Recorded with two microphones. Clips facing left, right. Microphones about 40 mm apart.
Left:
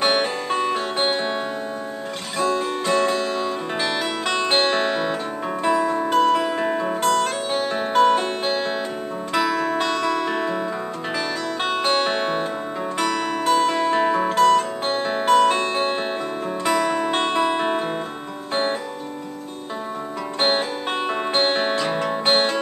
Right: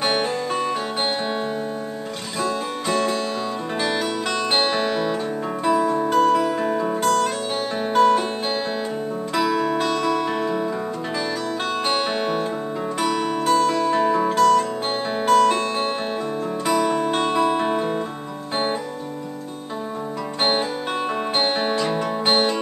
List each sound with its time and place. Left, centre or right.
0.0 s music: centre
2.4 s guitar: centre
3.0 s music: centre
4.3 s music: centre
7.0 s music: centre
11.9 s music: centre
13.0 s music: centre
13.6 s music: left
14.6 s music: centre
15.3 s music: left
16.6 s music: centre
21.4 s music: centre